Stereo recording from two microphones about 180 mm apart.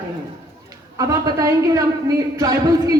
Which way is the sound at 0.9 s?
20° right (ahead or behind).